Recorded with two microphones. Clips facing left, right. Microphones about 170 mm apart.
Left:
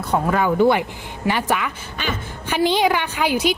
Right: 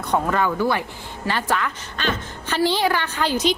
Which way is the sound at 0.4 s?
20° left (ahead or behind).